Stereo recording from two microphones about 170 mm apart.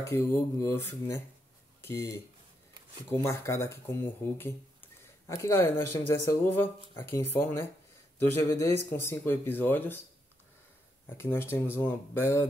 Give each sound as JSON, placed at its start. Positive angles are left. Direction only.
{"t": 0.0, "sound": "speech", "side_deg": 15}
{"t": 11.1, "sound": "speech", "side_deg": 15}